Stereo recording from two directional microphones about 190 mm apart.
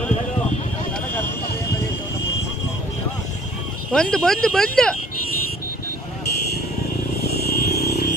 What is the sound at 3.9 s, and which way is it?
Speech, 5° left (ahead or behind).